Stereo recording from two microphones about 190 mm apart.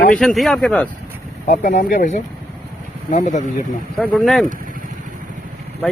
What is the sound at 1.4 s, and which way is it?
Speech, 40° left (ahead or behind).